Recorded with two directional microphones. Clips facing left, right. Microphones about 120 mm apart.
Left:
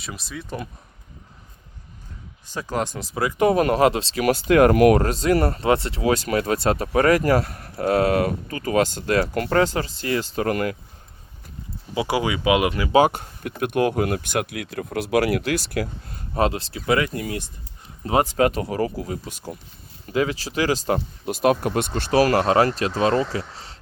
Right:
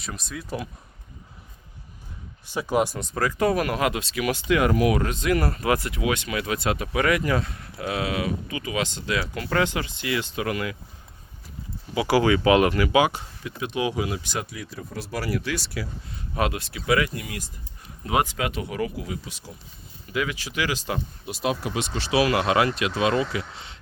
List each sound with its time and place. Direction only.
0.0 s speech: centre (ahead or behind)
2.5 s speech: 15° right (ahead or behind)
3.0 s speech: 5° left (ahead or behind)
3.2 s speech: 20° left (ahead or behind)
3.6 s speech: 30° left (ahead or behind)
4.2 s speech: 45° left (ahead or behind)
4.7 s speech: 60° left (ahead or behind)
4.9 s speech: 35° left (ahead or behind)
9.5 s speech: 35° left (ahead or behind)
11.9 s speech: 20° left (ahead or behind)
12.9 s speech: 45° left (ahead or behind)
16.3 s speech: 30° left (ahead or behind); by 19.5 s 50° left (ahead or behind)
20.1 s speech: 35° left (ahead or behind)